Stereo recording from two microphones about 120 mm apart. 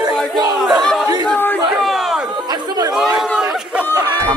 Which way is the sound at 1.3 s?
15° left (ahead or behind).